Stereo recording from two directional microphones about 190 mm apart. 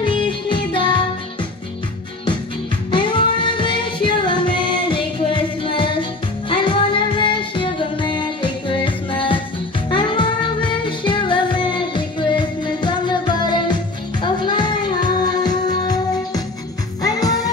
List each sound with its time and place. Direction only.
0.0 s music: 25° left (ahead or behind)
2.9 s music: 25° left (ahead or behind)